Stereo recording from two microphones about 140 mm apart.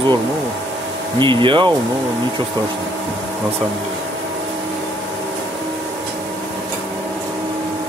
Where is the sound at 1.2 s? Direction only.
35° right (ahead or behind).